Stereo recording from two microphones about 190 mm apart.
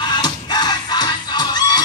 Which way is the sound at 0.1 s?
20° left (ahead or behind).